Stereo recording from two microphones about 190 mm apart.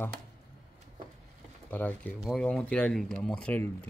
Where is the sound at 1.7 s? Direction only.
10° left (ahead or behind).